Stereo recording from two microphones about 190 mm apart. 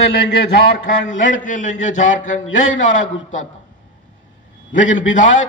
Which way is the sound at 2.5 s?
85° left.